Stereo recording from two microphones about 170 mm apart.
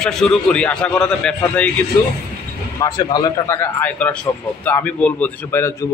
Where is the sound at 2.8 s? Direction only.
20° left (ahead or behind).